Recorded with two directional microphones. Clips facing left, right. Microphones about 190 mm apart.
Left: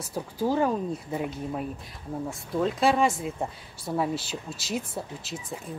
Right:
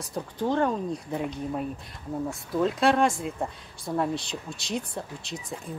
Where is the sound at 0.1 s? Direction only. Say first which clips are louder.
Left 1 dB; 5° left (ahead or behind).